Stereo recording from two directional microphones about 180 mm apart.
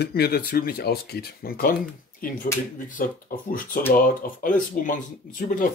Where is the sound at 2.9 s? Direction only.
50° left (ahead or behind).